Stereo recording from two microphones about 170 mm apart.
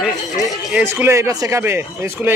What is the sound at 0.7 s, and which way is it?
Speech, 15° right (ahead or behind).